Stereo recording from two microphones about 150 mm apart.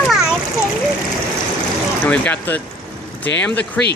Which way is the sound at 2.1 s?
10° left (ahead or behind).